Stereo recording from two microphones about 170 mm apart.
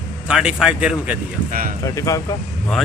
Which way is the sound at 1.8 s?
20° left (ahead or behind).